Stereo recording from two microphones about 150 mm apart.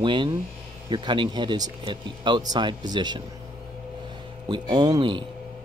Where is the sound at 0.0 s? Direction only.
30° right (ahead or behind).